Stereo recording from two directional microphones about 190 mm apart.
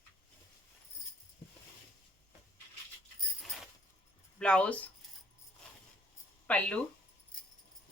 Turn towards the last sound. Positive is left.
turn(degrees=5)  # may be behind; listen again after turning